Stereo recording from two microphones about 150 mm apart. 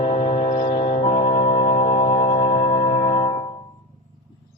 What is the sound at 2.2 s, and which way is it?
Music, 45° left (ahead or behind).